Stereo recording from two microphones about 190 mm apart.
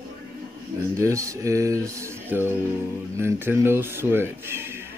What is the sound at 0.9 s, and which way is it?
Speech, 15° right (ahead or behind).